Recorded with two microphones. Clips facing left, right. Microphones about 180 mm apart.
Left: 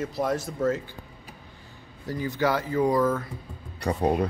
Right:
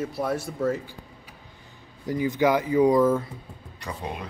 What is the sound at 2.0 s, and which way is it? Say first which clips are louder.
Speech: right 4 dB; 20° right (ahead or behind).